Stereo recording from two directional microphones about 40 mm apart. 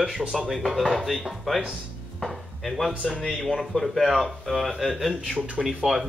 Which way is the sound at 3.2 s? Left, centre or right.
Centre.